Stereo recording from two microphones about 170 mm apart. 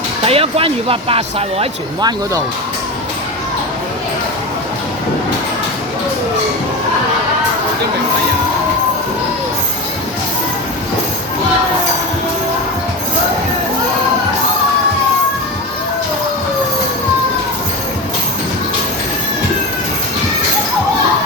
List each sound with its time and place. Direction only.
0.3 s speech: 35° right (ahead or behind)